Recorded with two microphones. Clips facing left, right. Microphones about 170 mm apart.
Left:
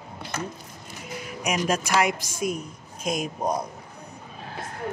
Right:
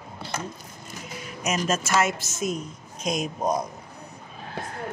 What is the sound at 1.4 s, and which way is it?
Speech, 15° left (ahead or behind).